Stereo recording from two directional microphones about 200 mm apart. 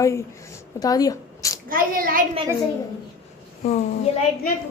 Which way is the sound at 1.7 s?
45° right (ahead or behind).